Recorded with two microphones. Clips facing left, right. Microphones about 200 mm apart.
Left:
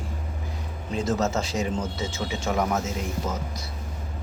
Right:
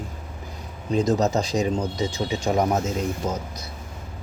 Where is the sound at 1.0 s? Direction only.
15° right (ahead or behind).